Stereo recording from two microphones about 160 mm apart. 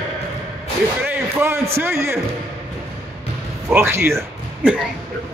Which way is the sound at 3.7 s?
15° right (ahead or behind).